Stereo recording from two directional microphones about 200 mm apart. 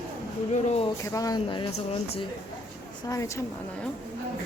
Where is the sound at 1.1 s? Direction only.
20° left (ahead or behind).